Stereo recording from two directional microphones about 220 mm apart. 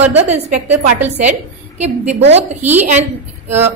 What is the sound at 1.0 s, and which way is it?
Speech, 30° right (ahead or behind).